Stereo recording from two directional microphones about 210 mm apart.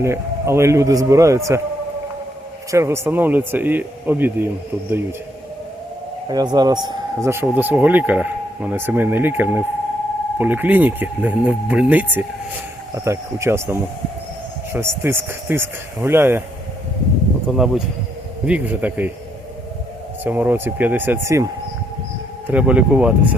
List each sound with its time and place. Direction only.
0.0 s speech: 15° right (ahead or behind)
2.7 s speech: 10° right (ahead or behind)
6.2 s speech: 20° right (ahead or behind)
17.5 s speech: centre (ahead or behind)
20.2 s speech: 10° right (ahead or behind)
22.4 s speech: 5° right (ahead or behind)